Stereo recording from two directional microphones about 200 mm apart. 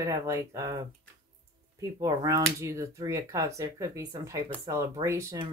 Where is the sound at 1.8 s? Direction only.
15° right (ahead or behind).